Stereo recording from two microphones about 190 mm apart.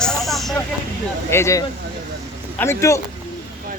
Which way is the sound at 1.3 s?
15° left (ahead or behind).